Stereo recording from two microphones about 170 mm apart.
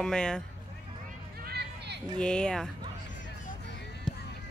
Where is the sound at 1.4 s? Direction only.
70° right (ahead or behind).